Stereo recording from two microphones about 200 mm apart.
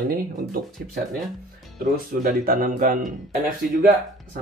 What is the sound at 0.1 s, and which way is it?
Speech, 50° right (ahead or behind).